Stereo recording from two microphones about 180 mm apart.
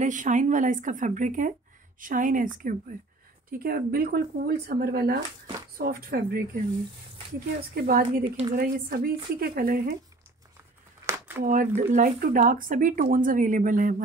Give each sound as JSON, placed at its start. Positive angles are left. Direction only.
{"t": 0.0, "sound": "speech", "side_deg": -45}
{"t": 7.7, "sound": "speech", "side_deg": -60}
{"t": 8.2, "sound": "a woman's voice", "side_deg": -30}
{"t": 8.5, "sound": "speech", "side_deg": -55}
{"t": 11.4, "sound": "speech", "side_deg": -45}